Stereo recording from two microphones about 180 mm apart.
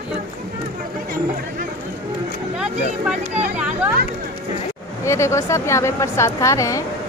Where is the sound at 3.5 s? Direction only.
10° right (ahead or behind).